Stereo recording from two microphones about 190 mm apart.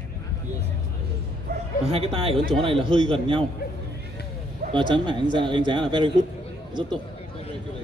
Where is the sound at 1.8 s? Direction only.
30° right (ahead or behind).